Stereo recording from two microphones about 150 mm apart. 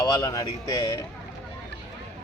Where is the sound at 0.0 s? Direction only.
25° left (ahead or behind).